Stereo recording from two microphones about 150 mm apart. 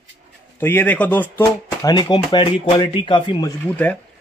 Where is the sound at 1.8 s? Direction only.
25° left (ahead or behind).